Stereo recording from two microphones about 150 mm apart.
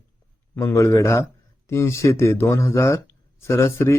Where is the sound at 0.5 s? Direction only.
20° left (ahead or behind).